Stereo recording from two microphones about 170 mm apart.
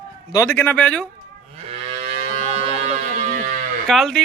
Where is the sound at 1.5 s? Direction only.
40° right (ahead or behind).